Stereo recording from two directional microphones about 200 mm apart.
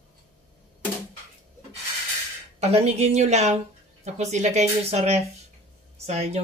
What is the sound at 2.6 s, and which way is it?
Speech, 30° right (ahead or behind).